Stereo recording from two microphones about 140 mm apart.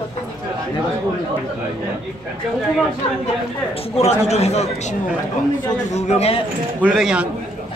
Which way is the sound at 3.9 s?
50° left (ahead or behind).